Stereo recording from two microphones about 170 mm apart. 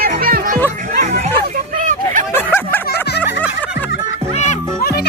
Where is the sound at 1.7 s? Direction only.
50° right (ahead or behind).